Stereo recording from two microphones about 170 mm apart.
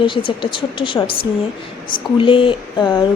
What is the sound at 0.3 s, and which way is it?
Speech, 30° left (ahead or behind).